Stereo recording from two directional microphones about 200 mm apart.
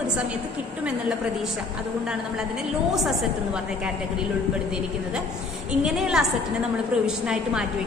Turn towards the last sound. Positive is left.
turn(degrees=-5)  # may be behind; listen again after turning